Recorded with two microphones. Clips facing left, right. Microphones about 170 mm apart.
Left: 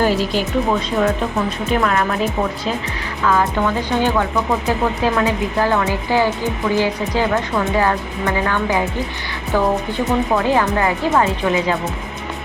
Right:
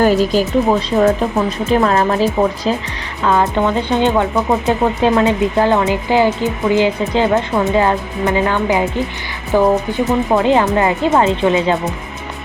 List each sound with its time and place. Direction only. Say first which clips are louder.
0.0 s speech: right 5 dB; 45° right (ahead or behind)
3.2 s speech: right 3 dB; 25° right (ahead or behind)